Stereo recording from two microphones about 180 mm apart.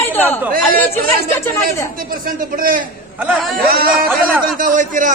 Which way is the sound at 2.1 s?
50° right (ahead or behind).